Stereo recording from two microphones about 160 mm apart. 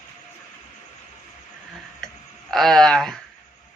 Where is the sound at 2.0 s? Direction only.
5° left (ahead or behind).